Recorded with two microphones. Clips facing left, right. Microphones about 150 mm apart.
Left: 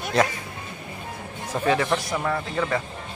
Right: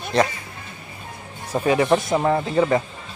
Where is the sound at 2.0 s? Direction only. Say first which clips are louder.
Right 6 dB; 25° right (ahead or behind).